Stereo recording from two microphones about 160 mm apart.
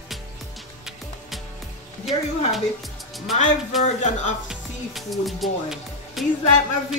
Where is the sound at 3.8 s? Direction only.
50° left (ahead or behind).